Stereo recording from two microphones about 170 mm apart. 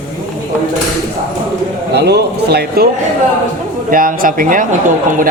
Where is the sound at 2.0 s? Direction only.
75° right (ahead or behind).